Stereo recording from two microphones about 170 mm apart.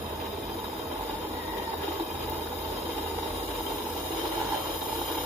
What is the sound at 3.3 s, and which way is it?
Vehicle, 15° right (ahead or behind).